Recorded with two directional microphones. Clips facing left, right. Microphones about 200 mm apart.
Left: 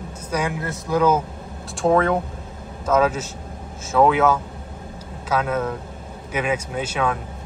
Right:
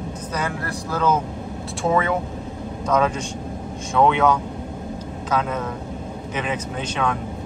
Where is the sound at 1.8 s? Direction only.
Centre (ahead or behind).